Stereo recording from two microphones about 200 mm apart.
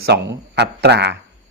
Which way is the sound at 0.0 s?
55° right (ahead or behind).